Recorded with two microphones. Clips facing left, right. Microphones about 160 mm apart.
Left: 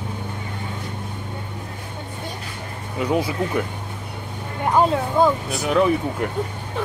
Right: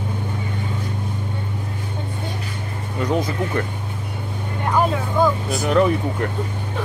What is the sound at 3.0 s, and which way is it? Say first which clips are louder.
Speech: even; 10° left (ahead or behind).